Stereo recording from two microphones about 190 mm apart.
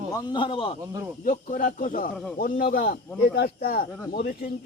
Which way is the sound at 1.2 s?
45° left (ahead or behind).